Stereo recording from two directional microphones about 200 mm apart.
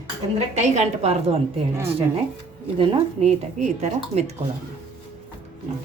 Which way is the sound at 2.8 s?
25° right (ahead or behind).